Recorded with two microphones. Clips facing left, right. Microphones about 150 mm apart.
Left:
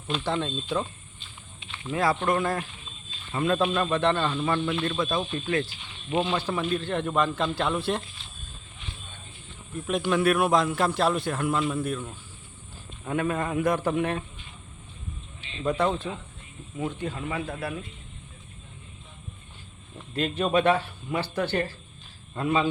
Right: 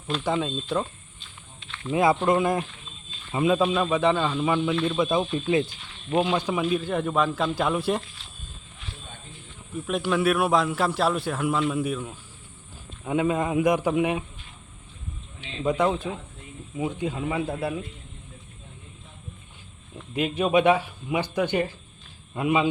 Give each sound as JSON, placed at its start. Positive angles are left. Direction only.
{"t": 0.3, "sound": "speech", "side_deg": -5}
{"t": 1.6, "sound": "snake", "side_deg": 10}
{"t": 1.9, "sound": "a man's voice", "side_deg": -20}
{"t": 5.6, "sound": "cricket", "side_deg": 5}
{"t": 6.1, "sound": "a man's voice", "side_deg": -10}
{"t": 9.7, "sound": "a man's voice", "side_deg": 0}
{"t": 15.6, "sound": "a man's voice", "side_deg": -15}
{"t": 20.1, "sound": "a man's voice", "side_deg": -10}